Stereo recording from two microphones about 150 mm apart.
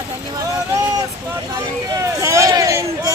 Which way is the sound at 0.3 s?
25° right (ahead or behind).